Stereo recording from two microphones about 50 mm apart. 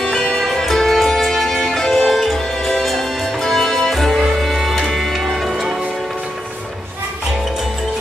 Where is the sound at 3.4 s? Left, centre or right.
Centre.